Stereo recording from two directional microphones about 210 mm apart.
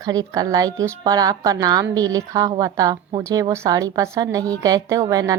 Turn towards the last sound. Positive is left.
turn(degrees=-15)  # may be behind; listen again after turning